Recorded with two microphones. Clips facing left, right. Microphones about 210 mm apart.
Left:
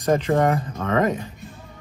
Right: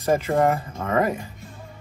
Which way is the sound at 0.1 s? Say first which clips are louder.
Left 1 dB; 5° right (ahead or behind).